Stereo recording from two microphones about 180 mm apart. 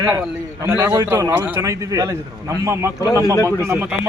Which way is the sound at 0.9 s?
20° right (ahead or behind).